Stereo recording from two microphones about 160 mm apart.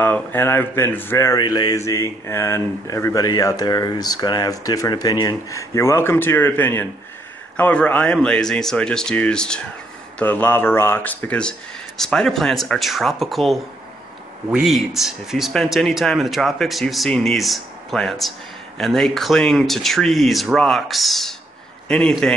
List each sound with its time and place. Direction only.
0.0 s speech: 10° left (ahead or behind)